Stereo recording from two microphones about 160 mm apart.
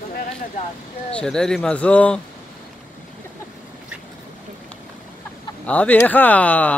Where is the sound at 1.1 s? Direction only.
5° left (ahead or behind).